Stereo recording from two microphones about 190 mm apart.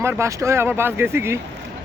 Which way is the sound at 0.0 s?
15° right (ahead or behind).